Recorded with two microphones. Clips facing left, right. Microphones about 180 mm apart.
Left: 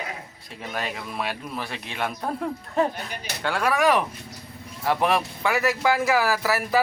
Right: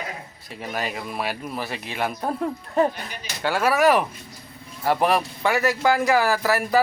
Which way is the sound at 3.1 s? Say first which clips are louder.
Left 2 dB; 60° left (ahead or behind).